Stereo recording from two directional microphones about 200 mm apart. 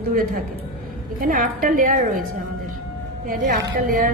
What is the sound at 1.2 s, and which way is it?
Speech, 45° right (ahead or behind).